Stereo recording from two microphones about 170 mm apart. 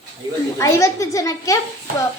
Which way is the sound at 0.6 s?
20° left (ahead or behind).